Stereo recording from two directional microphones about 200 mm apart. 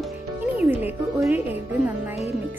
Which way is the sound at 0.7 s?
10° right (ahead or behind).